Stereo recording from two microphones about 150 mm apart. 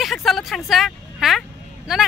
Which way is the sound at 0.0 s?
Centre (ahead or behind).